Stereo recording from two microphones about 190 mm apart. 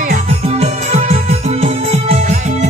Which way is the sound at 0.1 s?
35° right (ahead or behind).